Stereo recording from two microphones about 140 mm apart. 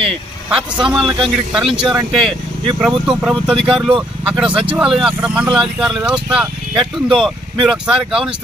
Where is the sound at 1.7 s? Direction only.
5° right (ahead or behind).